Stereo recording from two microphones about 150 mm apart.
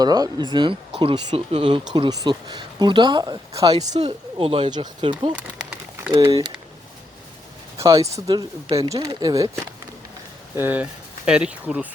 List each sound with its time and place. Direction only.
0.0 s speech: 25° right (ahead or behind)
5.3 s a sound: 10° right (ahead or behind)
6.2 s speech: 35° right (ahead or behind)
7.8 s speech: 20° right (ahead or behind)
10.6 s speech: 10° right (ahead or behind)